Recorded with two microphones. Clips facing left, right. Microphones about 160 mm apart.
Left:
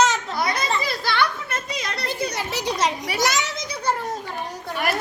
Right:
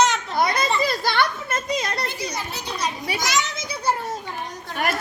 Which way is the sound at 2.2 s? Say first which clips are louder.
Left 4 dB; 70° left (ahead or behind).